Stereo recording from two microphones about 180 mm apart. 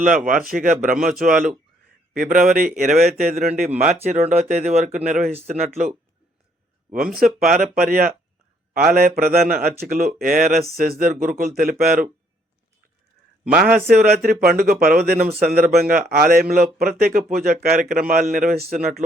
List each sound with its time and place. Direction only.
0.3 s a man's voice: 50° right (ahead or behind)
6.9 s a man's voice: 55° right (ahead or behind)
13.5 s a man's voice: 55° right (ahead or behind)